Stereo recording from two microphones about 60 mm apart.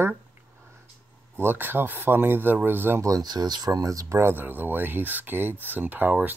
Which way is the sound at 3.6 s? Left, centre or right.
Right.